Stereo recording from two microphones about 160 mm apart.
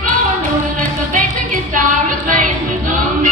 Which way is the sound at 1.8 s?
50° right (ahead or behind).